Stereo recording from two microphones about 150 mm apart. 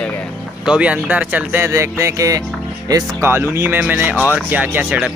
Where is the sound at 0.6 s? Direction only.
5° right (ahead or behind).